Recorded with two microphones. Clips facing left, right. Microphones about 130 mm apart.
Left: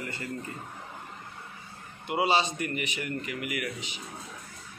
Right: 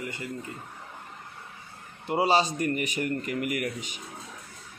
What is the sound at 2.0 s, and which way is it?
A man's voice, 40° right (ahead or behind).